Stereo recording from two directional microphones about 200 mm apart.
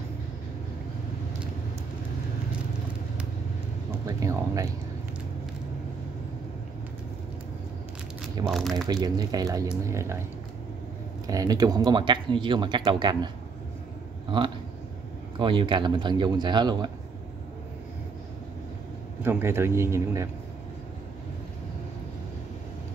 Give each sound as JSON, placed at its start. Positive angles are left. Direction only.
{"t": 4.2, "sound": "speech", "side_deg": -15}
{"t": 8.5, "sound": "speech", "side_deg": 0}
{"t": 8.8, "sound": "speech", "side_deg": -20}
{"t": 11.2, "sound": "speech", "side_deg": -20}
{"t": 15.3, "sound": "speech", "side_deg": -25}
{"t": 19.2, "sound": "speech", "side_deg": -10}